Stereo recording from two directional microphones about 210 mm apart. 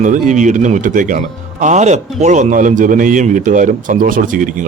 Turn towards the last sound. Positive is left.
turn(degrees=-40)  # may be behind; listen again after turning